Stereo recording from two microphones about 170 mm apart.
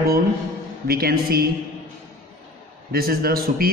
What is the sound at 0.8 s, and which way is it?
Speech, 60° right (ahead or behind).